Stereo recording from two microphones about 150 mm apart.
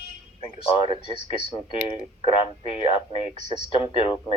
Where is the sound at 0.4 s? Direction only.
40° left (ahead or behind).